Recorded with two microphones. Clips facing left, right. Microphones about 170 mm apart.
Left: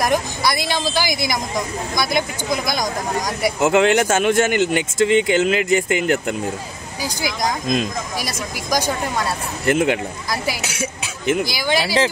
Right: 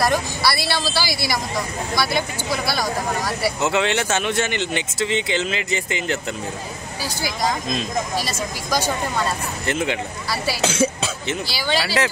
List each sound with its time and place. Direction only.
0.0 s speech: 15° left (ahead or behind)
3.7 s speech: 45° left (ahead or behind)
7.0 s speech: 15° left (ahead or behind)
9.7 s speech: 50° left (ahead or behind)
10.3 s speech: 15° left (ahead or behind)